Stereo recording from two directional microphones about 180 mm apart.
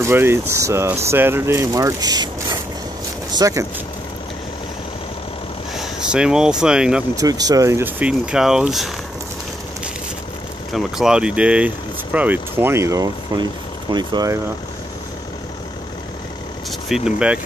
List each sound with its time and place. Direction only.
0.0 s speech: 15° right (ahead or behind)
5.8 s speech: 5° right (ahead or behind)
7.2 s speech: 20° right (ahead or behind); by 8.9 s centre (ahead or behind)
10.7 s speech: centre (ahead or behind); by 14.4 s 20° right (ahead or behind)
16.9 s speech: 5° right (ahead or behind)